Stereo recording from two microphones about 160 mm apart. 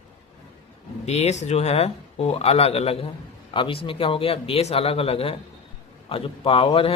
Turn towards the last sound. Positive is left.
turn(degrees=35)  # may be behind; listen again after turning